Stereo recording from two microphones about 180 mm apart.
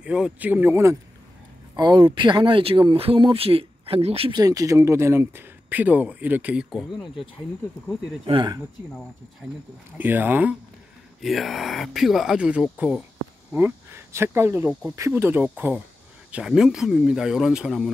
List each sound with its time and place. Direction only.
0.0 s speech: 5° right (ahead or behind)
1.8 s speech: 25° right (ahead or behind); by 7.1 s 5° right (ahead or behind)
8.3 s speech: 25° right (ahead or behind)
9.9 s speech: 10° right (ahead or behind)